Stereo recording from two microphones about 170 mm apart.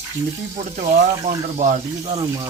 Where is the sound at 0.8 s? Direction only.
45° right (ahead or behind).